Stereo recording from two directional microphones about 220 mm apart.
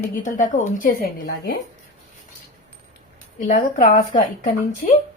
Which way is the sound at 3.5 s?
35° left (ahead or behind).